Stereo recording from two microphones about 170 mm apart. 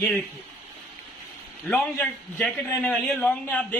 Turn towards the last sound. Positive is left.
turn(degrees=10)  # may be behind; listen again after turning